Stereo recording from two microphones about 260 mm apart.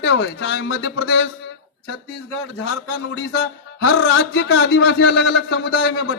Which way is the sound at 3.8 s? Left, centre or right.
Left.